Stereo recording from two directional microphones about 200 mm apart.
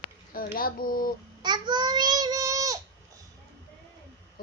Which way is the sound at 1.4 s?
20° right (ahead or behind).